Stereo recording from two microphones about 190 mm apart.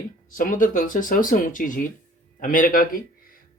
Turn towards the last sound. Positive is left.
turn(degrees=45)  # may be behind; listen again after turning